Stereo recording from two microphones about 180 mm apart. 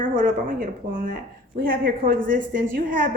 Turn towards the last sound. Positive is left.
turn(degrees=-50)  # may be behind; listen again after turning